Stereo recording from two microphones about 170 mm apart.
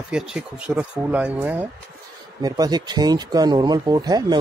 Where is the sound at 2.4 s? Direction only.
25° right (ahead or behind).